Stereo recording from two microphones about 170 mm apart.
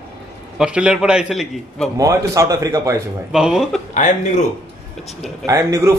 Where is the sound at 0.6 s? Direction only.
5° right (ahead or behind).